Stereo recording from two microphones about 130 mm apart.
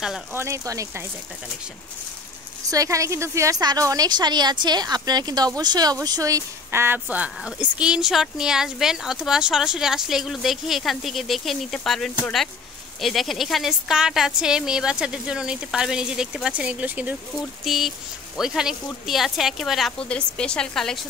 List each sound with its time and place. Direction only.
0.3 s a woman's voice: 20° right (ahead or behind)
2.7 s a woman's voice: 25° right (ahead or behind)
17.6 s speech: centre (ahead or behind)